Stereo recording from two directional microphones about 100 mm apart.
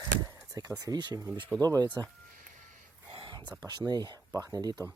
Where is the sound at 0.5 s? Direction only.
35° right (ahead or behind).